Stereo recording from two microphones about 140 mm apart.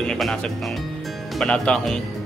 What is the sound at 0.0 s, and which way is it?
Speech, 5° left (ahead or behind).